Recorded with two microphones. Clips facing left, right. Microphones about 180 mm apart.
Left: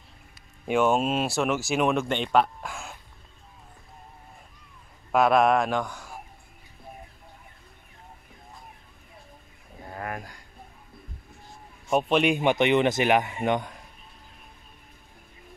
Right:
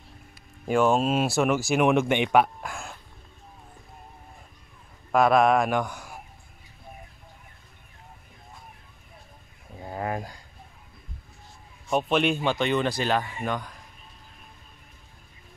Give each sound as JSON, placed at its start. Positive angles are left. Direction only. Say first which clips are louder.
{"t": 0.7, "sound": "speech", "louder": "right 1 dB", "side_deg": 0}
{"t": 1.4, "sound": "speech", "louder": "right 3 dB", "side_deg": -10}
{"t": 5.1, "sound": "speech", "louder": "right 1 dB", "side_deg": 0}
{"t": 5.8, "sound": "speech", "louder": "right 2 dB", "side_deg": -15}
{"t": 9.8, "sound": "a sound", "louder": "right 5 dB", "side_deg": -25}
{"t": 11.9, "sound": "speech", "louder": "left 1 dB", "side_deg": 0}
{"t": 12.4, "sound": "speech", "louder": "left 4 dB", "side_deg": 20}